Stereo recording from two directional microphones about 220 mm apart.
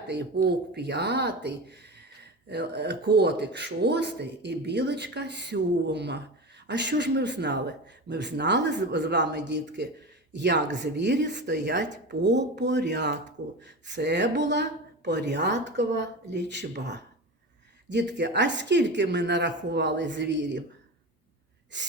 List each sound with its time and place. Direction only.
0.4 s a woman's voice: 50° right (ahead or behind)
21.7 s a woman's voice: 55° right (ahead or behind)